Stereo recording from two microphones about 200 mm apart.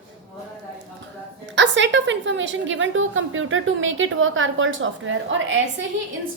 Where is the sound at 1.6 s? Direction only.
65° right (ahead or behind).